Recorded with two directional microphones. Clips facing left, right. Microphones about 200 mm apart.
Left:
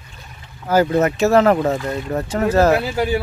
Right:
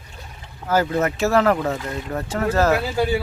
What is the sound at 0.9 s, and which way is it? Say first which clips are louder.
Speech: left 4 dB; 20° left (ahead or behind).